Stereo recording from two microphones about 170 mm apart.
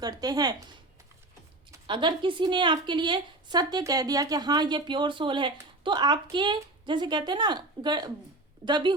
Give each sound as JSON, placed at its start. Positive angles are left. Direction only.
{"t": 0.0, "sound": "a woman's voice", "side_deg": -25}
{"t": 1.9, "sound": "a woman's voice", "side_deg": -30}